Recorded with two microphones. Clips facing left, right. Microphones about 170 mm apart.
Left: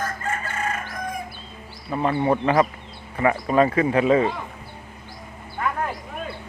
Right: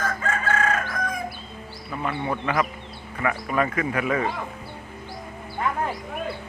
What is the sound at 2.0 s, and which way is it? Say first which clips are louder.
A man's voice: left 7 dB; 35° left (ahead or behind).